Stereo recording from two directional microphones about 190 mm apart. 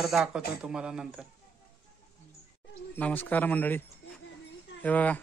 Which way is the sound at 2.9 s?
10° left (ahead or behind).